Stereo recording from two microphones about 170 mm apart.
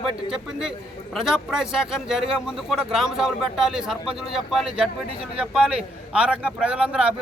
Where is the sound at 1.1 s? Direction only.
Centre (ahead or behind).